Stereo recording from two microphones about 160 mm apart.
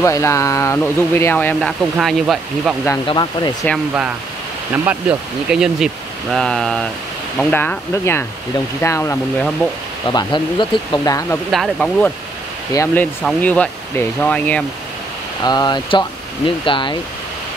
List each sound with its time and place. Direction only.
0.0 s speech: 20° left (ahead or behind); by 2.7 s centre (ahead or behind)
3.1 s speech: 25° left (ahead or behind)
4.8 s speech: 5° right (ahead or behind); by 9.2 s 15° left (ahead or behind)
10.0 s speech: 30° left (ahead or behind)
11.5 s speech: centre (ahead or behind)
12.7 s speech: 15° left (ahead or behind)
15.4 s speech: 25° left (ahead or behind)